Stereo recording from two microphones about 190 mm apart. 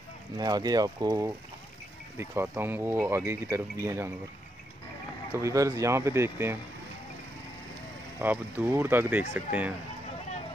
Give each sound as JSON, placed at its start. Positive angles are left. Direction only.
{"t": 0.4, "sound": "speech", "side_deg": -20}
{"t": 5.4, "sound": "speech", "side_deg": -15}
{"t": 8.2, "sound": "speech", "side_deg": -10}